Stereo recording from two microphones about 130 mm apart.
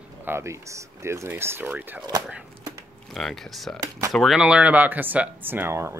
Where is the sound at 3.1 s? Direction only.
Centre (ahead or behind); by 6.0 s 20° right (ahead or behind).